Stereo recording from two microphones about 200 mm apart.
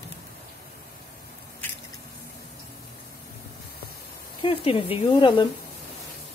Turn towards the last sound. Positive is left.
turn(degrees=25)  # may be behind; listen again after turning